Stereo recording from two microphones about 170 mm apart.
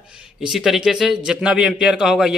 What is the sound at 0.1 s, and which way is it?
A man's voice, 5° right (ahead or behind).